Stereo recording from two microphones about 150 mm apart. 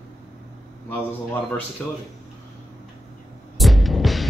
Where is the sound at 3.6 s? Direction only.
Centre (ahead or behind).